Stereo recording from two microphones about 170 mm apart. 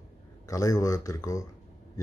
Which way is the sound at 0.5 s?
20° left (ahead or behind).